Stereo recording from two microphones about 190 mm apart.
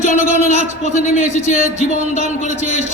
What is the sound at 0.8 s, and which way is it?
A man's voice, 35° right (ahead or behind).